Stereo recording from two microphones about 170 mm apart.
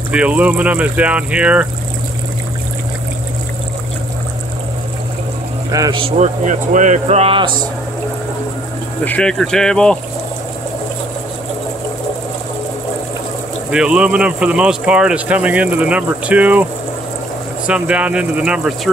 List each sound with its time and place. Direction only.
0.1 s speech: 5° right (ahead or behind)
5.7 s speech: 20° right (ahead or behind)
5.9 s speech: 40° right (ahead or behind)
9.0 s speech: 5° left (ahead or behind)
13.7 s speech: 5° right (ahead or behind)
17.6 s speech: 5° right (ahead or behind)